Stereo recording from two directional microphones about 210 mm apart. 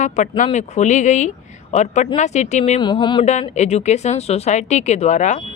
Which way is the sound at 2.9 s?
20° left (ahead or behind).